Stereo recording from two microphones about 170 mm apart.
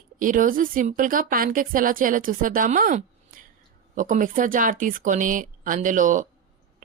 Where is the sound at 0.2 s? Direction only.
50° right (ahead or behind).